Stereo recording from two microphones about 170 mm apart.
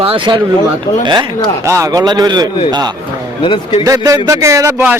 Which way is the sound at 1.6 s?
20° right (ahead or behind).